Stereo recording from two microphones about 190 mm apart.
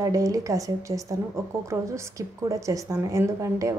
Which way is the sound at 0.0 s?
20° right (ahead or behind).